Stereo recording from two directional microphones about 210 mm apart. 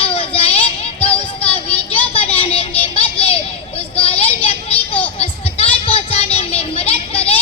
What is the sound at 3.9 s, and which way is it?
Vehicle, 25° left (ahead or behind).